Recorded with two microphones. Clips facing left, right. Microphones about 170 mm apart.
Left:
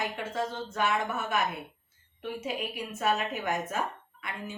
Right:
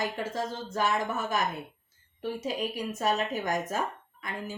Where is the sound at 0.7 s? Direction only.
35° right (ahead or behind).